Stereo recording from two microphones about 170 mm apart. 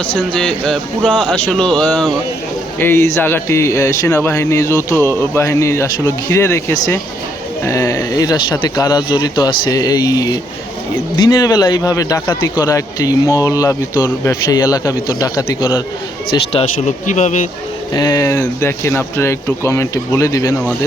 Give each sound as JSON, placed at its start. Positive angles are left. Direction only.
{"t": 0.2, "sound": "a man's voice", "side_deg": 5}
{"t": 16.3, "sound": "speech", "side_deg": 35}
{"t": 17.1, "sound": "speech", "side_deg": 45}
{"t": 17.9, "sound": "speech", "side_deg": 25}